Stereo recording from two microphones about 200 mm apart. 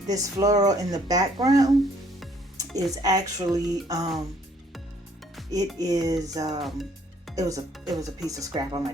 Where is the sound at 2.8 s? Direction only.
20° right (ahead or behind).